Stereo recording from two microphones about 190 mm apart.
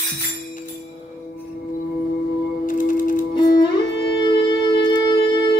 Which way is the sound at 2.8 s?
45° left (ahead or behind).